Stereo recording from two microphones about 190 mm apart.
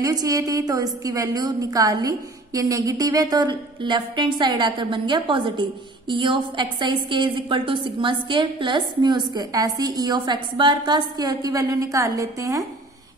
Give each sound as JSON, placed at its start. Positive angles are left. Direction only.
{"t": 0.0, "sound": "a woman's voice", "side_deg": -20}